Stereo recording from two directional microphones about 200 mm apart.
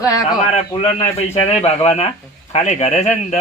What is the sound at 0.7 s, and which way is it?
A man's voice, 30° left (ahead or behind).